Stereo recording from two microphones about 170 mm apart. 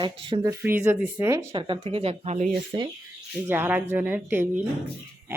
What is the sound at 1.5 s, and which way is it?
Speech, 30° right (ahead or behind).